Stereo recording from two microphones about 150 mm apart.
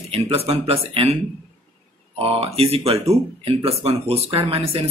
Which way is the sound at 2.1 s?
40° right (ahead or behind).